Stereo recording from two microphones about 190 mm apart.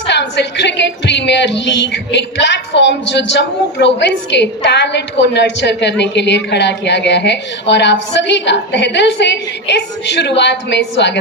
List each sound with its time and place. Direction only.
0.1 s speech: 65° left (ahead or behind)